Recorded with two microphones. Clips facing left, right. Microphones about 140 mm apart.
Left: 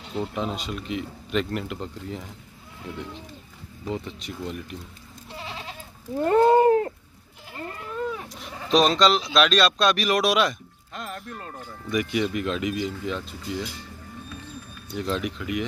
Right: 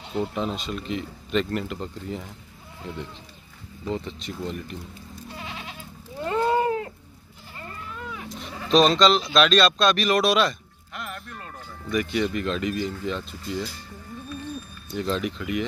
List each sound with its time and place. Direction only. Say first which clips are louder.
0.1 s speech: right 1 dB; centre (ahead or behind)
3.8 s speech: right 1 dB; 5° left (ahead or behind)
5.3 s goat: left 2 dB; 30° left (ahead or behind)
6.1 s speech: left 6 dB; 45° left (ahead or behind)
8.1 s goat: left 3 dB; 35° left (ahead or behind)
8.4 s speech: right 2 dB; 5° left (ahead or behind)
11.1 s music: left 3 dB; 25° left (ahead or behind)
11.9 s speech: even; 10° left (ahead or behind)
15.0 s speech: right 1 dB; centre (ahead or behind)